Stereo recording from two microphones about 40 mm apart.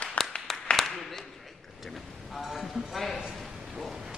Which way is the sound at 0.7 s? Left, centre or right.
Left.